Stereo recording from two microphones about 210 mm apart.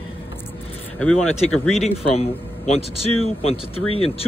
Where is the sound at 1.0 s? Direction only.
5° left (ahead or behind).